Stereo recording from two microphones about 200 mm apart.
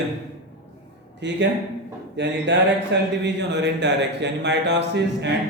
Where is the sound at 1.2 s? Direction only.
60° right (ahead or behind).